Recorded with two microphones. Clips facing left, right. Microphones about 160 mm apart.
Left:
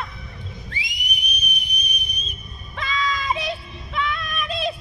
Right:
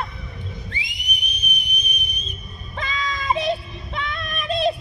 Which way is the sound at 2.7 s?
40° right (ahead or behind).